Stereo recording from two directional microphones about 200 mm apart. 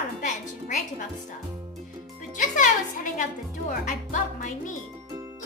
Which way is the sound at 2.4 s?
40° left (ahead or behind).